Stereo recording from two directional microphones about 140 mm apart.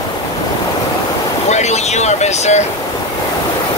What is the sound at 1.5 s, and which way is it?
Vehicle, 55° left (ahead or behind).